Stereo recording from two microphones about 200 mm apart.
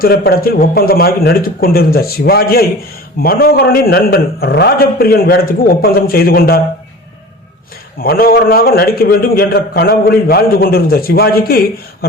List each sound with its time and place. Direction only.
0.0 s a man's voice: 50° left (ahead or behind)
8.0 s a man's voice: 50° left (ahead or behind)